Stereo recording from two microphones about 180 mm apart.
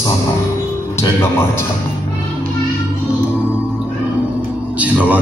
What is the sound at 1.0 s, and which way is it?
Speech, 10° left (ahead or behind).